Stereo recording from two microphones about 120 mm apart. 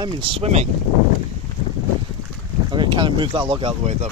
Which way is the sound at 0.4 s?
65° right (ahead or behind).